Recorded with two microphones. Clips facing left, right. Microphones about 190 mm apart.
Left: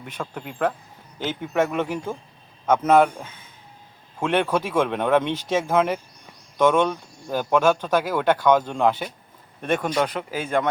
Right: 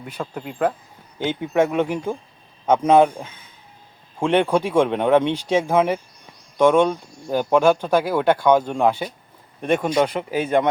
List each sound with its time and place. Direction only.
0.0 s speech: 5° right (ahead or behind)